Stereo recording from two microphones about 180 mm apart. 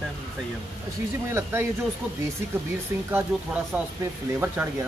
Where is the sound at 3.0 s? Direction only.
10° right (ahead or behind).